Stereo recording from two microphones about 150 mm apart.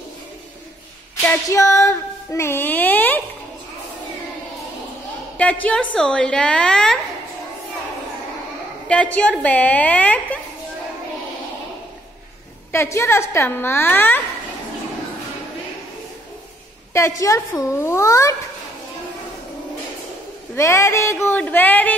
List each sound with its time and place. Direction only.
1.2 s a sound: 20° left (ahead or behind)
5.4 s a woman's voice: 10° left (ahead or behind)
8.8 s a woman's voice: 10° left (ahead or behind)
12.7 s a woman's voice: 15° left (ahead or behind)
17.2 s a child's voice: 20° left (ahead or behind)
20.5 s a woman's voice: 20° left (ahead or behind)